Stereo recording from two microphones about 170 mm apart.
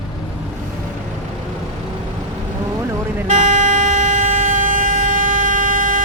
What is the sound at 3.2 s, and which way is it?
Vehicle, 45° right (ahead or behind).